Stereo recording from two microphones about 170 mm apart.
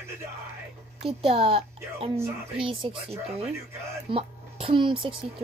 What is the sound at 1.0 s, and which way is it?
Speech, 35° right (ahead or behind).